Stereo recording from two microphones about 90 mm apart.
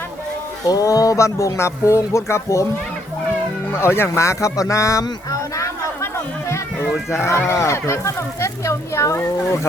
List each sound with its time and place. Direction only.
0.6 s speech: 40° left (ahead or behind)
3.7 s speech: 25° left (ahead or behind)
7.1 s speech: 30° left (ahead or behind)